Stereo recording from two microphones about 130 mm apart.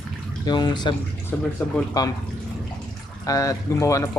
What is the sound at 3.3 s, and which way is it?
Speech, 25° left (ahead or behind).